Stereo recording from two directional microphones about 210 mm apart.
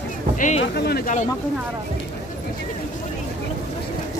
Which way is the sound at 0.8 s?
45° left (ahead or behind).